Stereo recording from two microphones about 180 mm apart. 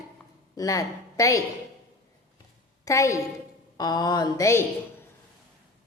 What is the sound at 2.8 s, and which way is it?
A woman's voice, 15° left (ahead or behind).